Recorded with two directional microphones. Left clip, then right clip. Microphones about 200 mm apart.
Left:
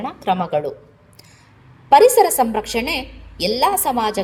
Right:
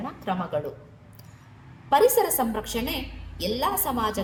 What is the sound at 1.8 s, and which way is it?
A woman's voice, 25° left (ahead or behind).